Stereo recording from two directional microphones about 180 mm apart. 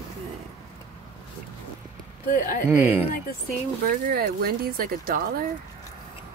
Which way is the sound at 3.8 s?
50° right (ahead or behind).